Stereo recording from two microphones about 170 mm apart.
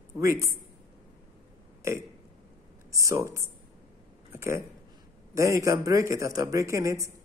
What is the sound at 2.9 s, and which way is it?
Speech, 20° right (ahead or behind).